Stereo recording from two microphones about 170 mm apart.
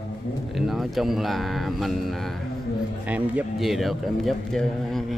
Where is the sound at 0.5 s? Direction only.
Centre (ahead or behind).